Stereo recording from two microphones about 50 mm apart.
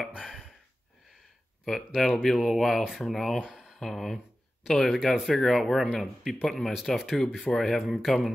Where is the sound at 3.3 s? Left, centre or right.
Centre.